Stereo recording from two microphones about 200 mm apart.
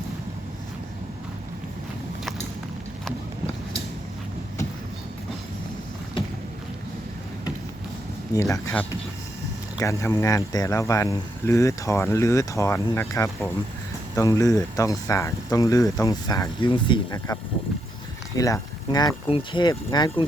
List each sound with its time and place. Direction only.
8.3 s speech: 15° left (ahead or behind)
18.3 s speech: 15° left (ahead or behind)